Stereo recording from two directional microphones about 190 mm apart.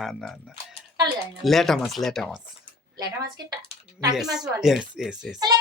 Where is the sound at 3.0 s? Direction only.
20° right (ahead or behind).